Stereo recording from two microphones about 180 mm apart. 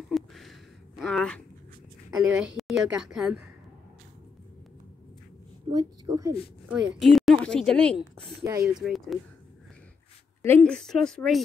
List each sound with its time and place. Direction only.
0.1 s a sound: centre (ahead or behind)
2.1 s a woman's voice: 5° right (ahead or behind)
5.7 s a woman's voice: 20° right (ahead or behind)
6.7 s a woman's voice: centre (ahead or behind)
8.5 s speech: 15° right (ahead or behind)
8.7 s a woman's voice: centre (ahead or behind)
10.4 s a woman's voice: 10° left (ahead or behind)